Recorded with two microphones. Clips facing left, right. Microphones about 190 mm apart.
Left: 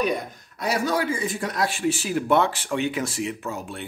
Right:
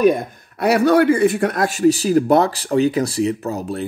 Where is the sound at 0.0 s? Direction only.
55° right (ahead or behind).